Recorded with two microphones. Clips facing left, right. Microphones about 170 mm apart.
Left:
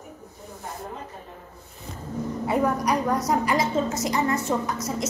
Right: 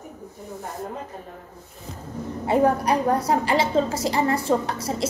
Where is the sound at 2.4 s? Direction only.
30° right (ahead or behind).